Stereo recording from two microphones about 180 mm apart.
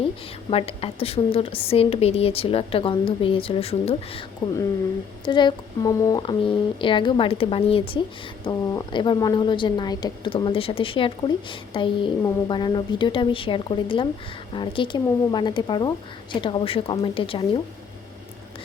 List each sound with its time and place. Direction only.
0.5 s a woman's voice: 35° left (ahead or behind)
4.4 s a woman's voice: 20° left (ahead or behind)
6.2 s a woman's voice: 30° left (ahead or behind)